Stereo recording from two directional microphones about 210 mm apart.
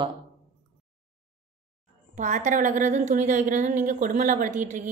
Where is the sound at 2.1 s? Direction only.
35° right (ahead or behind).